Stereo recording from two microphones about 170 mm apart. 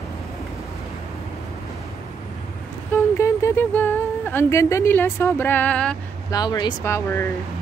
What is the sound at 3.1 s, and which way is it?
Speech, 15° left (ahead or behind).